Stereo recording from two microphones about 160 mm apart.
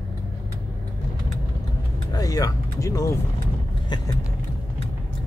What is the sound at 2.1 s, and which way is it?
Speech, 25° left (ahead or behind).